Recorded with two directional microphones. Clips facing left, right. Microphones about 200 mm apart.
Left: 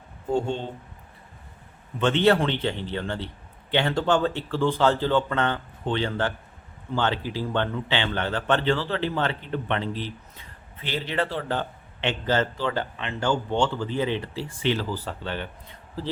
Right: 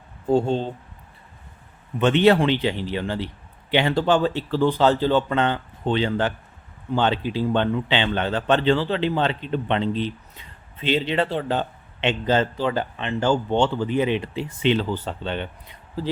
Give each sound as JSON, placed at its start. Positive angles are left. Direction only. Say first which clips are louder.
{"t": 0.3, "sound": "speech", "louder": "right 5 dB", "side_deg": -35}
{"t": 2.0, "sound": "speech", "louder": "right 3 dB", "side_deg": -15}